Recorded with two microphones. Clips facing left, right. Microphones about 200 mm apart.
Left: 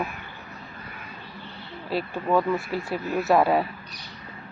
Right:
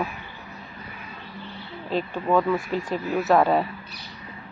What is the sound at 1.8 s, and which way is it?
Speech, 10° left (ahead or behind).